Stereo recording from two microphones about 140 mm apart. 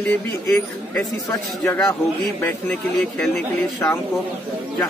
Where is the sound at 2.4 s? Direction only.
10° left (ahead or behind).